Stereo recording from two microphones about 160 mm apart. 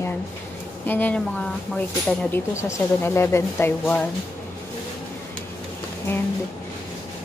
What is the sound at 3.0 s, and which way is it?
Speech, 15° left (ahead or behind).